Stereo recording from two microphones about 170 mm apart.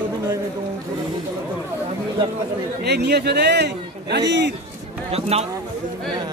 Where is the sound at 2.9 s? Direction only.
75° right (ahead or behind).